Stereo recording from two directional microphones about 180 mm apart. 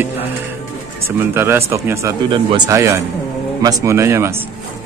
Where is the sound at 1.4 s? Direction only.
15° right (ahead or behind).